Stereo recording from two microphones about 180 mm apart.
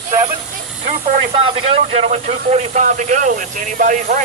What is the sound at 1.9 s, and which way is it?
Speech, 35° right (ahead or behind).